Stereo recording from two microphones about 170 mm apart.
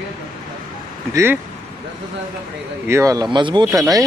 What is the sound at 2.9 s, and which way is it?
Speech, 20° right (ahead or behind).